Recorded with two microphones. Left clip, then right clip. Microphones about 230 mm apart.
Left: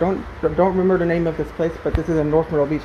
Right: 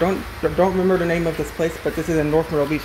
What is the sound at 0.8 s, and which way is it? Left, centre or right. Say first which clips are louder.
Speech: left 1 dB; centre.